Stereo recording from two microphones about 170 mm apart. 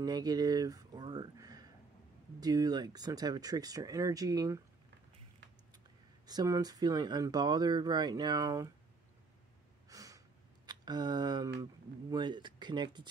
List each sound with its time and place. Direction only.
0.0 s speech: 25° right (ahead or behind)
6.2 s speech: 20° right (ahead or behind)
9.8 s a sound: 20° right (ahead or behind)
10.7 s speech: 25° right (ahead or behind)